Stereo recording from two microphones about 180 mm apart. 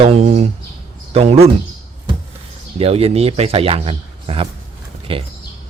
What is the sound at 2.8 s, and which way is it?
Speech, 35° right (ahead or behind).